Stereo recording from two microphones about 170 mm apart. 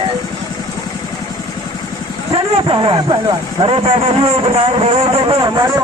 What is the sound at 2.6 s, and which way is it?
Speech, 30° right (ahead or behind).